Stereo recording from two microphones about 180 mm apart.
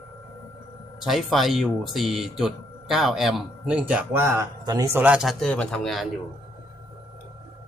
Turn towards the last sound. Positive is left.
turn(degrees=0)  # may be behind; listen again after turning